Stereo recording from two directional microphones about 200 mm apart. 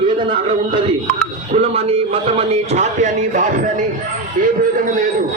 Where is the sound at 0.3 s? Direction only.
25° right (ahead or behind).